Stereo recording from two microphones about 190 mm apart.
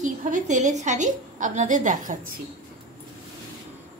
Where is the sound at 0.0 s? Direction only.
40° right (ahead or behind).